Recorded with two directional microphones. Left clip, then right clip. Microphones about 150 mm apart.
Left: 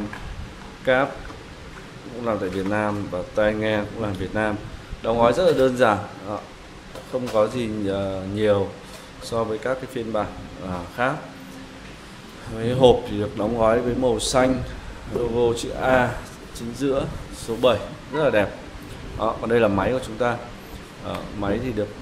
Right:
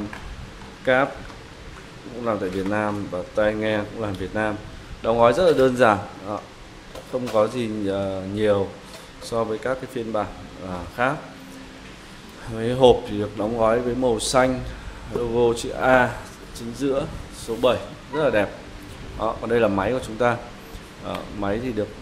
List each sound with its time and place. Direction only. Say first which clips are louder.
0.8 s speech: even; 15° right (ahead or behind)
2.2 s speech: even; 10° right (ahead or behind)
5.0 s a man's voice: right 1 dB; 20° right (ahead or behind); by 11.1 s 5° right (ahead or behind)
12.5 s speech: even; 15° right (ahead or behind)
14.1 s a man's voice: right 2 dB; 15° right (ahead or behind)
16.5 s a man's voice: even; 5° right (ahead or behind)
20.0 s a man's voice: right 2 dB; 20° right (ahead or behind)